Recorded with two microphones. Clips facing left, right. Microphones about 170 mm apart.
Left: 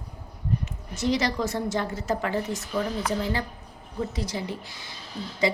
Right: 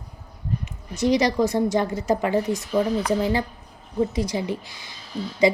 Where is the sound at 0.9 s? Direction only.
15° right (ahead or behind).